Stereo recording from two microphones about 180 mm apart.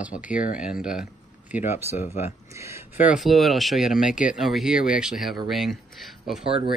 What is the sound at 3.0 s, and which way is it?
Speech, 5° right (ahead or behind).